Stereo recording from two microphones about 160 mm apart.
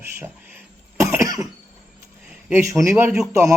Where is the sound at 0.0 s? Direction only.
15° right (ahead or behind).